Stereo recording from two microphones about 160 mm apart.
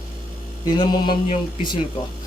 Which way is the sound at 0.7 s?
25° left (ahead or behind).